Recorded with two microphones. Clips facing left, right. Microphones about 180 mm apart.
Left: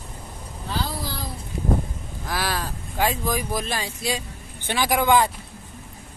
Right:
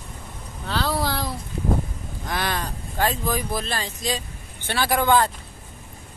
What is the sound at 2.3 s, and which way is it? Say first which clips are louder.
Speech: even; 5° left (ahead or behind).